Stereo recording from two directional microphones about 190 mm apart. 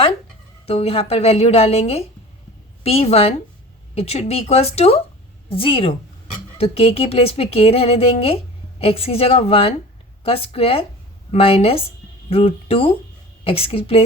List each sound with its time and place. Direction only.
0.6 s a woman's voice: 30° left (ahead or behind)